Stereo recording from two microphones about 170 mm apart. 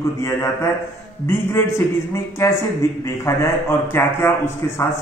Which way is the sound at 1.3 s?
15° left (ahead or behind).